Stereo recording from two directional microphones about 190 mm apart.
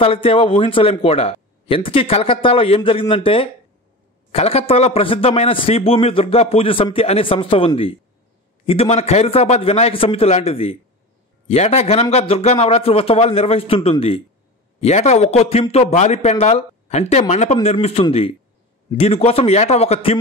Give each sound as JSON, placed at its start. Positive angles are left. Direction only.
{"t": 0.0, "sound": "a man's voice", "side_deg": 30}